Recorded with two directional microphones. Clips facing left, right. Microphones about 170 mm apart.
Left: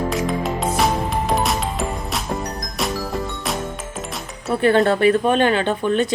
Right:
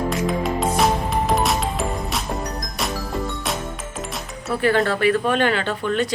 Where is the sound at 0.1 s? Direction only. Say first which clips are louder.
Even; centre (ahead or behind).